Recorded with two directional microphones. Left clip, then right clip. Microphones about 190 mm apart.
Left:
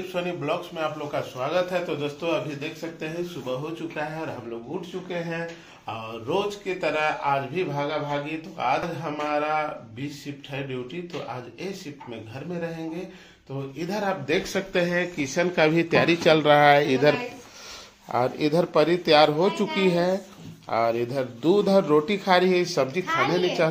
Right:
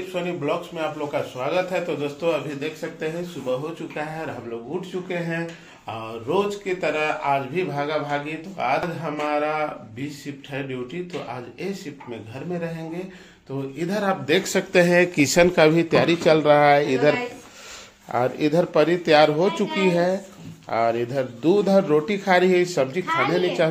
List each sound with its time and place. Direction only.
0.1 s a man's voice: centre (ahead or behind)
5.9 s a man's voice: centre (ahead or behind)
13.7 s speech: 15° right (ahead or behind); by 15.4 s 50° right (ahead or behind)
15.7 s a man's voice: centre (ahead or behind)